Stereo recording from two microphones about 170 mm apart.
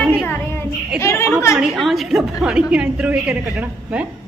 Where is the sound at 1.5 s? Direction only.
Centre (ahead or behind).